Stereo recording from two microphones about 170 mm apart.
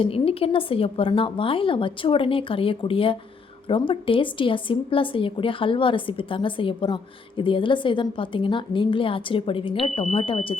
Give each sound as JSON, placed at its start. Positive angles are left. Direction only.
{"t": 0.0, "sound": "a woman's voice", "side_deg": 35}